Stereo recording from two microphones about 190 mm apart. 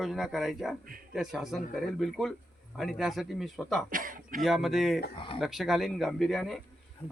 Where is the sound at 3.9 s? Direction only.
45° right (ahead or behind).